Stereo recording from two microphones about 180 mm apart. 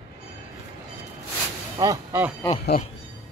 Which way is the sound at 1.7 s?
15° right (ahead or behind).